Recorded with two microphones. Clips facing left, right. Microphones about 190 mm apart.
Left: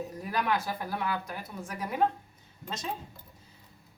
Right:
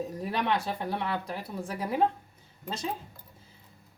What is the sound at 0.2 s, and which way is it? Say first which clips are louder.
Speech: even; 30° right (ahead or behind).